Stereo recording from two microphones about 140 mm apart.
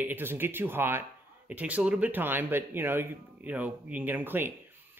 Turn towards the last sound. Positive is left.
turn(degrees=-15)  # may be behind; listen again after turning